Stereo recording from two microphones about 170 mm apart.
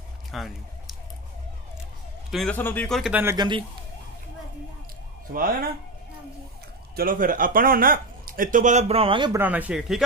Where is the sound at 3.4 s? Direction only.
30° right (ahead or behind).